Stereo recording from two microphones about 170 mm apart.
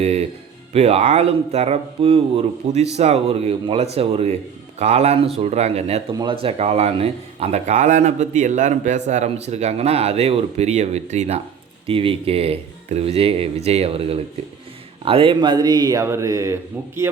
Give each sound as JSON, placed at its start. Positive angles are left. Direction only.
{"t": 0.0, "sound": "a man's voice", "side_deg": -40}